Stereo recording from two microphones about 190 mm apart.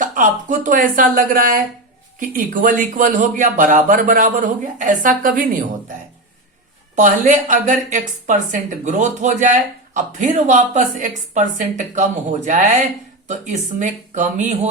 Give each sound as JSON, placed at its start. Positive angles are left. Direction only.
{"t": 0.0, "sound": "speech", "side_deg": -45}
{"t": 6.9, "sound": "a woman's voice", "side_deg": -40}